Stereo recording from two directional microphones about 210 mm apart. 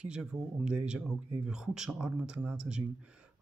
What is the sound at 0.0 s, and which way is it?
Speech, 5° right (ahead or behind).